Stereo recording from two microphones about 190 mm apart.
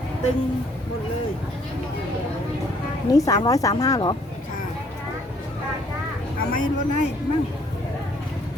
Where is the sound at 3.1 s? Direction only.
20° left (ahead or behind).